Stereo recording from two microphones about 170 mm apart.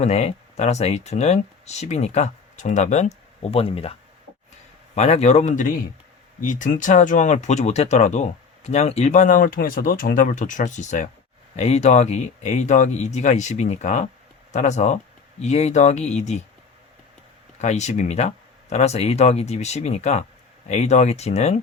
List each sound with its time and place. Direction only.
0.0 s speech: 40° left (ahead or behind)
4.9 s speech: 40° left (ahead or behind)
17.6 s speech: 40° left (ahead or behind)